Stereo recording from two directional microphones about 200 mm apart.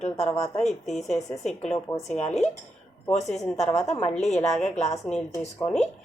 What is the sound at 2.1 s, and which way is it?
Speech, 35° left (ahead or behind).